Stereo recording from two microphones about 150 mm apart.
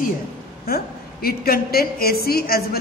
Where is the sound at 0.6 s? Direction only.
90° left.